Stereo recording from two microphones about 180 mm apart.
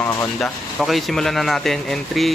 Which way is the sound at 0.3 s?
Centre (ahead or behind).